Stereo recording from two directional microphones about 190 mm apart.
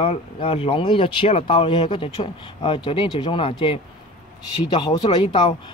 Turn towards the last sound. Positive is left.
turn(degrees=25)  # may be behind; listen again after turning